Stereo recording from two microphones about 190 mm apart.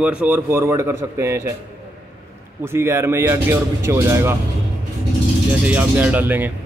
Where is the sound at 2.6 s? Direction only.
10° right (ahead or behind).